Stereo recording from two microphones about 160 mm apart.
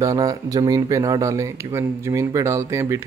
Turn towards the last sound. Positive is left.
turn(degrees=-15)  # may be behind; listen again after turning